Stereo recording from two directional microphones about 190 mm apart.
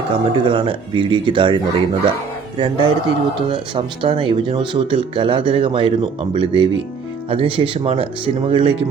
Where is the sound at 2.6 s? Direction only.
25° right (ahead or behind).